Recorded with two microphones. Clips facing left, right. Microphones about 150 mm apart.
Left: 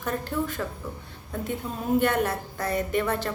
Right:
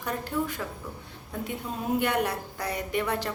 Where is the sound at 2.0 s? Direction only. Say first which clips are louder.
Left 3 dB; 15° right (ahead or behind).